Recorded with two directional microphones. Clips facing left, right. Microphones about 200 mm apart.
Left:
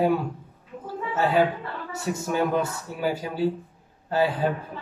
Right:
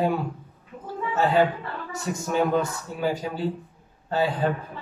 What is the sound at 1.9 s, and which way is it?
A man's voice, 10° left (ahead or behind).